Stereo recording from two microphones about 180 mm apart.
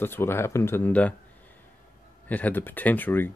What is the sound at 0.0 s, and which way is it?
Speech, 10° left (ahead or behind).